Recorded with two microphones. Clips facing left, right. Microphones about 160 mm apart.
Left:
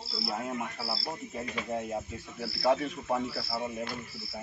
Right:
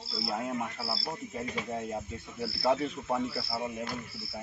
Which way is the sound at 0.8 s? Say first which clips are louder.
Even; centre (ahead or behind).